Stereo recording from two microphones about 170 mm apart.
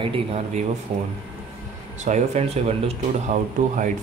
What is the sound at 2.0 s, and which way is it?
Speech, 40° right (ahead or behind).